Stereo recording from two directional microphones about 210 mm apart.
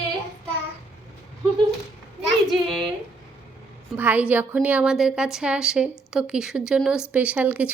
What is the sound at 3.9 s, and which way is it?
A woman's voice, 10° right (ahead or behind).